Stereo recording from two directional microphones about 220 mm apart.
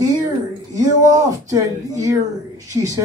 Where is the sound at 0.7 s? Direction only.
15° right (ahead or behind).